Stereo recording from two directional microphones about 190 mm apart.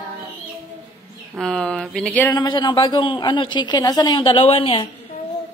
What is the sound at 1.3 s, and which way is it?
Speech, 5° left (ahead or behind).